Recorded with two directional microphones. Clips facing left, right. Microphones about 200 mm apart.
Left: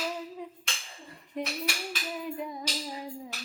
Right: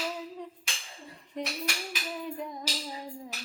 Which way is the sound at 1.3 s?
5° left (ahead or behind).